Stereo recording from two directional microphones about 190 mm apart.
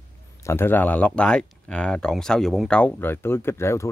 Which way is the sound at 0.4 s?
15° left (ahead or behind).